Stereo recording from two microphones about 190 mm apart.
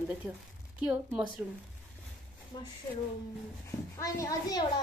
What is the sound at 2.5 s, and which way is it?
A woman's voice, 25° left (ahead or behind).